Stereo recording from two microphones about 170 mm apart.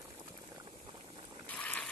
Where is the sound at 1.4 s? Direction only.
10° left (ahead or behind).